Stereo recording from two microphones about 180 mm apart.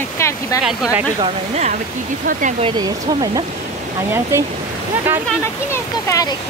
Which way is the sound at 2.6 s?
25° right (ahead or behind).